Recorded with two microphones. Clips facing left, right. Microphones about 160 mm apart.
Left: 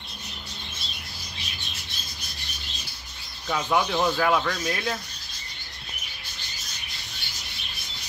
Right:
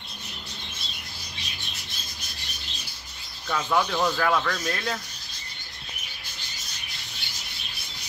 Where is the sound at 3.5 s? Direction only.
10° left (ahead or behind).